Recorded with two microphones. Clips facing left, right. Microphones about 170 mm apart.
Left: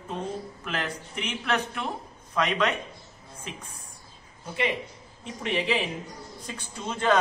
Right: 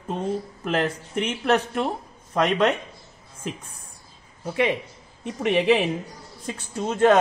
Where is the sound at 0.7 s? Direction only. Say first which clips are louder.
Right 9 dB; 50° right (ahead or behind).